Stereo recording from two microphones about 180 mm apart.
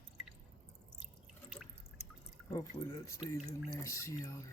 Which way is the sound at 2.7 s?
15° left (ahead or behind).